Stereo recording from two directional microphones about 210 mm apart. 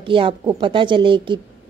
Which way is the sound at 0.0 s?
25° right (ahead or behind).